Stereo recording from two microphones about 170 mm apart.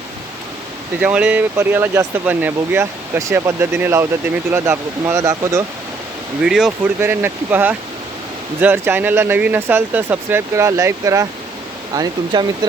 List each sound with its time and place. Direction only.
0.9 s speech: 5° right (ahead or behind)
6.4 s speech: 5° right (ahead or behind); by 12.5 s 25° right (ahead or behind)